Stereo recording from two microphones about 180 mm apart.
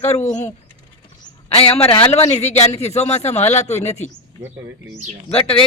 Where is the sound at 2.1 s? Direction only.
35° left (ahead or behind).